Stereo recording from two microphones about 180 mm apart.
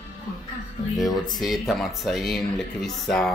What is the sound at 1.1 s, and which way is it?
Speech, 25° left (ahead or behind).